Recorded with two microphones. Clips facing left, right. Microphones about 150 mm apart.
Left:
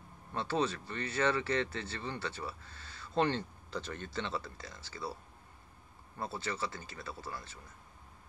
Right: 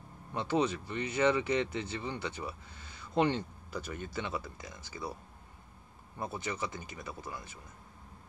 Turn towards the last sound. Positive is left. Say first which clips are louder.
# right 1 dB
turn(degrees=-15)  # may be behind; listen again after turning